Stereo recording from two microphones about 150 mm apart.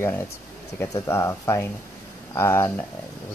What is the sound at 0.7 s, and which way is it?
Speech, 20° left (ahead or behind).